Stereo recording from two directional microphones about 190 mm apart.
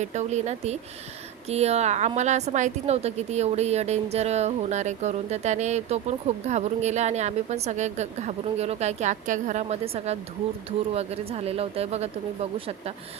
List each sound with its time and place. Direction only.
0.0 s a woman's voice: 40° right (ahead or behind)